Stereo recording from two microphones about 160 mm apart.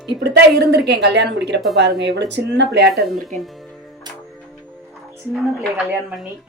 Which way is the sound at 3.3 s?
50° right (ahead or behind).